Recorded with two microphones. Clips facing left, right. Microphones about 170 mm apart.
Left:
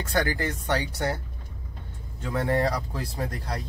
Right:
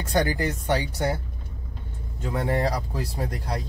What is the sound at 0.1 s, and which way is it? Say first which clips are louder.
Speech: right 3 dB; 15° right (ahead or behind).